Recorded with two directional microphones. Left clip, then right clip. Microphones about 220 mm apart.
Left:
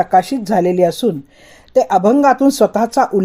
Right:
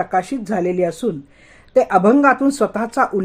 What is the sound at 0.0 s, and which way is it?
Speech, 30° left (ahead or behind).